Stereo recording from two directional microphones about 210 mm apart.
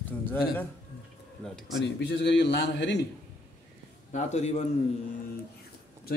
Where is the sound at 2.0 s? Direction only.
55° left (ahead or behind).